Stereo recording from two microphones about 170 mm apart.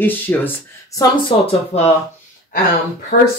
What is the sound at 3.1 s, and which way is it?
Speech, 65° left (ahead or behind).